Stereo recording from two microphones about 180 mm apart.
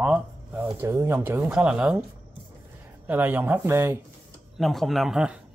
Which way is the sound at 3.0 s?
10° right (ahead or behind).